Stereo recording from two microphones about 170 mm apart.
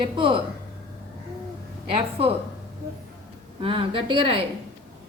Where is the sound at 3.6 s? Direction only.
30° right (ahead or behind).